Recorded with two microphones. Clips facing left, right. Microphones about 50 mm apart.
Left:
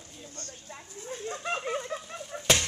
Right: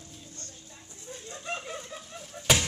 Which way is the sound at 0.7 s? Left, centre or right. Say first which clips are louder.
Left 7 dB; left.